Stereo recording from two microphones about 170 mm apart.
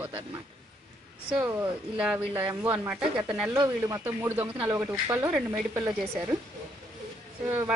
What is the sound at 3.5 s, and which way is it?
Speech, 20° right (ahead or behind).